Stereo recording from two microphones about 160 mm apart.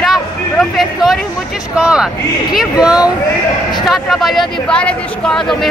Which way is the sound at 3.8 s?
Centre (ahead or behind).